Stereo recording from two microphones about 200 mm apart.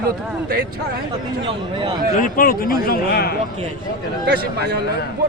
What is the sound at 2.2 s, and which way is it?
Speech, 45° left (ahead or behind).